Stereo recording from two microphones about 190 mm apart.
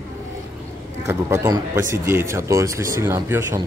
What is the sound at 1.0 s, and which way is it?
Speech, 15° right (ahead or behind).